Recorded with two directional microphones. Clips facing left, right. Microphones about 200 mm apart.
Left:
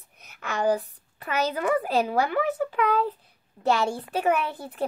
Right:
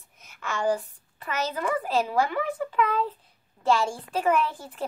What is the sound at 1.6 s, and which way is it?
Speech, 55° left (ahead or behind).